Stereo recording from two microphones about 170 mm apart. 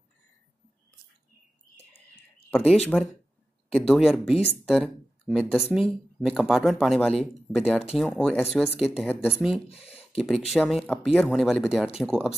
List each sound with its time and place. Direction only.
2.5 s speech: 5° left (ahead or behind)
9.1 s speech: 10° left (ahead or behind)
9.8 s speech: 35° left (ahead or behind)
10.1 s speech: centre (ahead or behind)